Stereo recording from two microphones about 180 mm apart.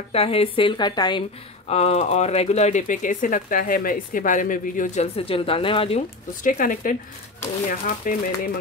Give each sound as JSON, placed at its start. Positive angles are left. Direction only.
{"t": 0.1, "sound": "a woman's voice", "side_deg": 30}
{"t": 1.7, "sound": "speech", "side_deg": 35}